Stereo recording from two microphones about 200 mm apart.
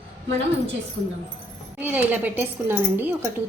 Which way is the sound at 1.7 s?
10° right (ahead or behind).